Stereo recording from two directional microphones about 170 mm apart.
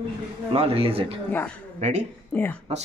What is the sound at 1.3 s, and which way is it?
Speech, 10° left (ahead or behind).